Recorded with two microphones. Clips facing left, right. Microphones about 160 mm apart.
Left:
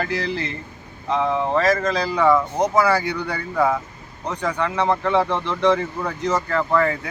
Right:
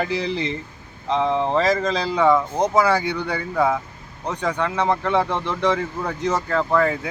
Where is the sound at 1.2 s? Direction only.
20° right (ahead or behind).